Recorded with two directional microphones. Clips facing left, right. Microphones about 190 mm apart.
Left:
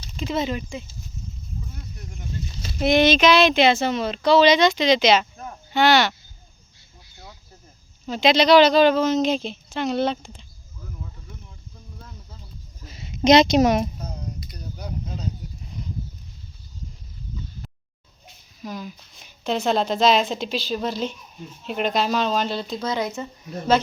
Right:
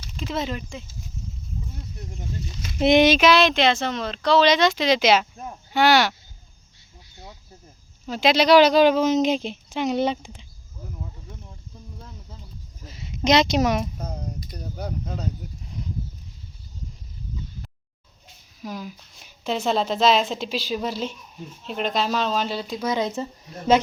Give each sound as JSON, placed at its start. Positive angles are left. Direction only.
{"t": 0.2, "sound": "speech", "side_deg": 0}
{"t": 1.7, "sound": "a sound", "side_deg": -25}
{"t": 2.7, "sound": "speech", "side_deg": -20}
{"t": 8.0, "sound": "speech", "side_deg": -5}
{"t": 13.2, "sound": "a woman's voice", "side_deg": 20}
{"t": 14.0, "sound": "a sound", "side_deg": -55}
{"t": 18.6, "sound": "speech", "side_deg": -5}
{"t": 23.1, "sound": "a woman's voice", "side_deg": -35}
{"t": 23.7, "sound": "speech", "side_deg": -20}